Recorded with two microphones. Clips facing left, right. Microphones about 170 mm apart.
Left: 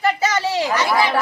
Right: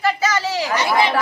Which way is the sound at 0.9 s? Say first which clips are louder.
Right 3 dB; 20° right (ahead or behind).